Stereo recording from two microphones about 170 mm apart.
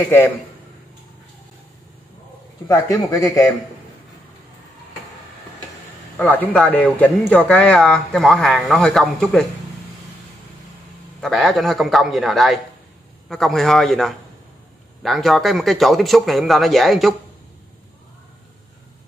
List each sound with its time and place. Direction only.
2.7 s speech: 20° left (ahead or behind)
6.1 s speech: 10° left (ahead or behind)
11.1 s speech: centre (ahead or behind)